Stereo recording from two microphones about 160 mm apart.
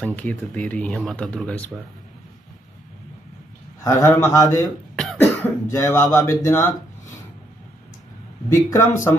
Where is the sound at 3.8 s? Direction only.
20° left (ahead or behind).